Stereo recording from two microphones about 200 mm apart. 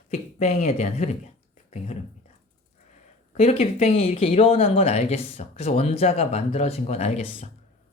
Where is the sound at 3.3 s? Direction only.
30° left (ahead or behind).